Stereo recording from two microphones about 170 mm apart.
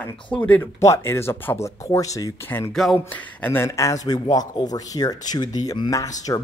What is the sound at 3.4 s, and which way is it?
Speech, 15° left (ahead or behind).